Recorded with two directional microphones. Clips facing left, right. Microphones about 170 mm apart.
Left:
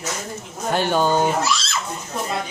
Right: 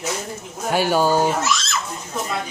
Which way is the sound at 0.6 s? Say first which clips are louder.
Right 1 dB; 5° right (ahead or behind).